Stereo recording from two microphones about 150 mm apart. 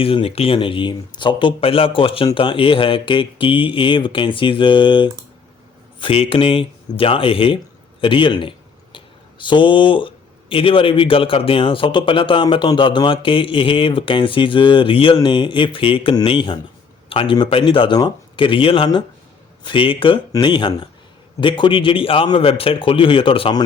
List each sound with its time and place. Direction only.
0.0 s speech: 40° left (ahead or behind)
8.0 s a sound: 35° left (ahead or behind)
10.5 s speech: 35° left (ahead or behind)